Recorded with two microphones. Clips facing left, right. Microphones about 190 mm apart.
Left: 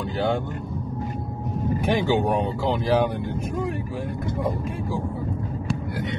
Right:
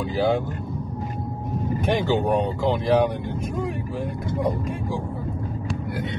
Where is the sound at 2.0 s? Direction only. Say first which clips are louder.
Right 1 dB; 10° left (ahead or behind).